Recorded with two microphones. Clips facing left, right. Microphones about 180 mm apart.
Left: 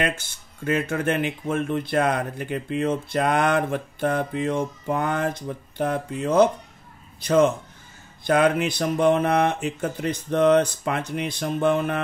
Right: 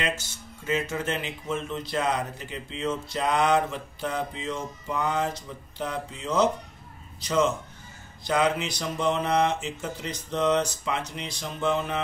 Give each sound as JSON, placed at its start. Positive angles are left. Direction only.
{"t": 0.0, "sound": "speech", "side_deg": 55}